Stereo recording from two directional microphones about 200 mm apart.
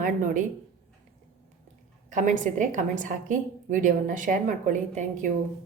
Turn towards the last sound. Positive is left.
turn(degrees=-40)  # may be behind; listen again after turning